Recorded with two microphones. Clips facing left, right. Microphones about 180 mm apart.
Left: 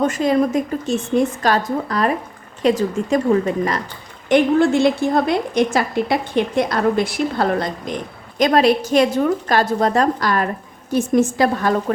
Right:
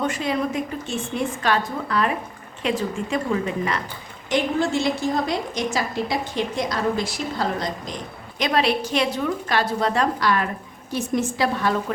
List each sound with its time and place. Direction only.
0.0 s speech: 45° left (ahead or behind)
4.3 s a woman's voice: 55° left (ahead or behind)
8.4 s a woman's voice: 45° left (ahead or behind)